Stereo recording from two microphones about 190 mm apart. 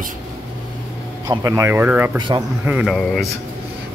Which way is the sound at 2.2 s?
25° right (ahead or behind).